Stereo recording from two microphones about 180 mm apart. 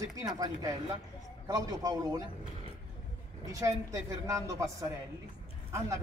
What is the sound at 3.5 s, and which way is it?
A woman's voice, 20° right (ahead or behind).